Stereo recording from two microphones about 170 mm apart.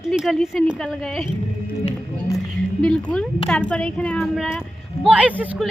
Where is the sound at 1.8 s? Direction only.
20° left (ahead or behind).